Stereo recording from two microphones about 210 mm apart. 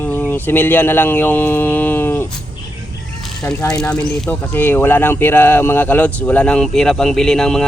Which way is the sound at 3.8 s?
5° left (ahead or behind).